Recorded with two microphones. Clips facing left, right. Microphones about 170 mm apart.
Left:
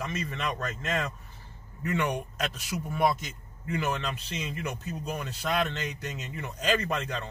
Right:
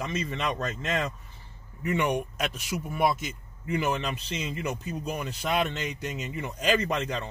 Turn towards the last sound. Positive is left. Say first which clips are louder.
# right 3 dB
turn(degrees=-20)  # may be behind; listen again after turning